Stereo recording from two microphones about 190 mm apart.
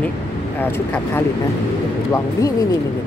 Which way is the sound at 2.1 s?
15° left (ahead or behind).